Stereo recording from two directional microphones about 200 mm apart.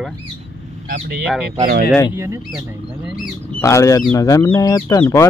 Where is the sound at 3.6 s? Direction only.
15° left (ahead or behind).